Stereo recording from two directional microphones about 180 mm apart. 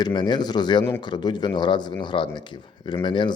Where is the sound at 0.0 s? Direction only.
25° left (ahead or behind).